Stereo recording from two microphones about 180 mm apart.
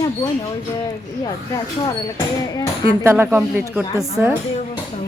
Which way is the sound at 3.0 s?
15° right (ahead or behind).